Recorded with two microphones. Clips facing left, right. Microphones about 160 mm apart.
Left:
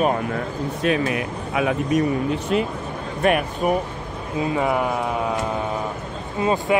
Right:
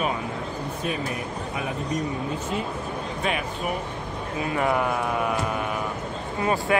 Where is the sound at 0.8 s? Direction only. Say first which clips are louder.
Left 9 dB; 90° left.